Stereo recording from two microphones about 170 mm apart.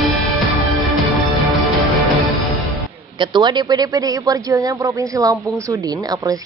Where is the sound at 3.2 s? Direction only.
25° right (ahead or behind).